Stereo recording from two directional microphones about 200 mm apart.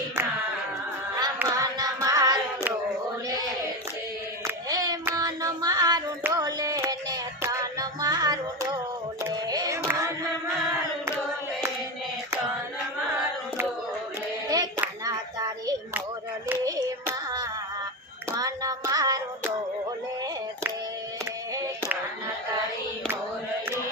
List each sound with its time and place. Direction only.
1.4 s a sound: 15° right (ahead or behind)
4.7 s hands: 20° right (ahead or behind)
9.2 s music: 20° right (ahead or behind)
14.5 s hands: 20° right (ahead or behind)
16.5 s child singing: 15° right (ahead or behind)
18.3 s music: 20° right (ahead or behind)